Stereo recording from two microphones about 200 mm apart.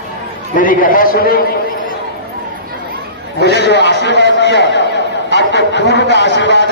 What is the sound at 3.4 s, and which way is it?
A man's voice, 55° left (ahead or behind).